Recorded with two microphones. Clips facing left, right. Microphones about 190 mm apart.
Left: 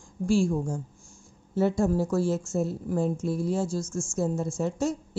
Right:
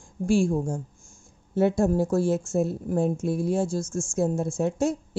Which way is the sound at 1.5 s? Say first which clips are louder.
Right 2 dB; 55° right (ahead or behind).